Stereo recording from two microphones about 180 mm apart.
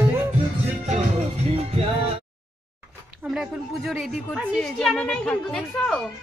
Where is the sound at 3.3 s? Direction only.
Centre (ahead or behind).